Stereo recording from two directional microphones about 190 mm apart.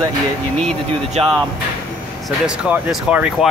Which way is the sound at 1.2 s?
30° right (ahead or behind).